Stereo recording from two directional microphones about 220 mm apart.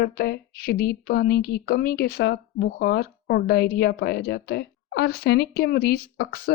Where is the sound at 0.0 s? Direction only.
45° left (ahead or behind).